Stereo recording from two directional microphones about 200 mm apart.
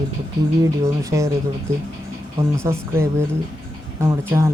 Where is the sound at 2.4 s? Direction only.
30° right (ahead or behind).